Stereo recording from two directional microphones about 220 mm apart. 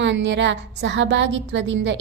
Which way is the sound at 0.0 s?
55° right (ahead or behind).